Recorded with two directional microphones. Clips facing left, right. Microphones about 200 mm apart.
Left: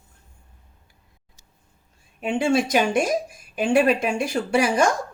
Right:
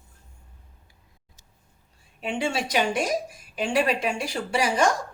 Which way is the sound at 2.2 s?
50° left (ahead or behind).